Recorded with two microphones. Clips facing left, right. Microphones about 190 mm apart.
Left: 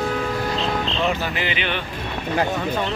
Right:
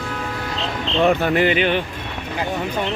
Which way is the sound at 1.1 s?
55° right (ahead or behind).